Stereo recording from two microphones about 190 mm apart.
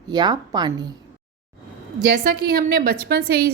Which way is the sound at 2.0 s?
60° right (ahead or behind).